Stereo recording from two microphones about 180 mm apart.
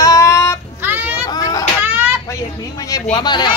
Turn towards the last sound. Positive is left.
turn(degrees=25)  # may be behind; listen again after turning